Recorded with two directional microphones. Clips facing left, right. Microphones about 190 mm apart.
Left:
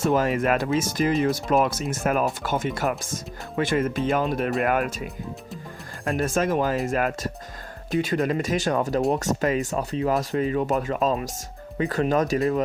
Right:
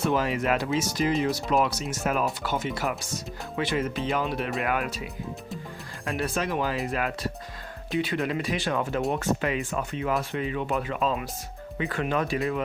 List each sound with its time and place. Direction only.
0.0 s speech: 45° left (ahead or behind)
6.1 s speech: 45° left (ahead or behind)